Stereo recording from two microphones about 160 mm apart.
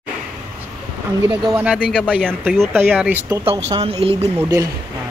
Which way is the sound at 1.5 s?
10° right (ahead or behind).